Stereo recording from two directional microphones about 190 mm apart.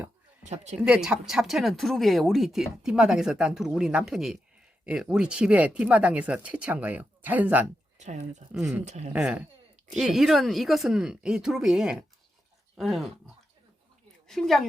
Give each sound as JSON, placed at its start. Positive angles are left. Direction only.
{"t": 0.4, "sound": "speech", "side_deg": -35}
{"t": 0.8, "sound": "speech", "side_deg": -5}
{"t": 7.9, "sound": "speech", "side_deg": -40}
{"t": 8.5, "sound": "speech", "side_deg": -5}
{"t": 14.3, "sound": "a woman's voice", "side_deg": 0}